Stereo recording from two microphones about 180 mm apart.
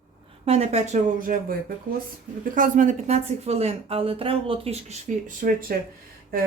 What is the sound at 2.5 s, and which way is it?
A woman's voice, 45° right (ahead or behind).